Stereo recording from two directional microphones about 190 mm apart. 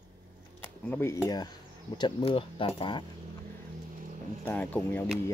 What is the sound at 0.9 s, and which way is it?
Speech, 15° left (ahead or behind).